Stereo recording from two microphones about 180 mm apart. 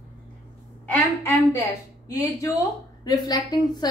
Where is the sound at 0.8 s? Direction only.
15° left (ahead or behind).